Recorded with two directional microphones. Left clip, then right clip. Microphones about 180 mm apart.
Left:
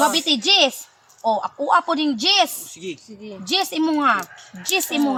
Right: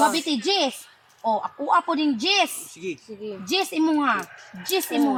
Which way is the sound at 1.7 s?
20° left (ahead or behind).